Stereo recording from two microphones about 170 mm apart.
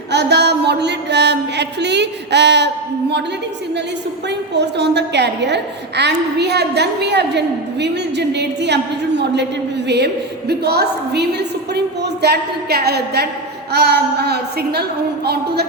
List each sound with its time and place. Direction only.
0.1 s music: 80° right
4.3 s a woman's voice: 85° right
10.5 s a woman's voice: 70° right (ahead or behind)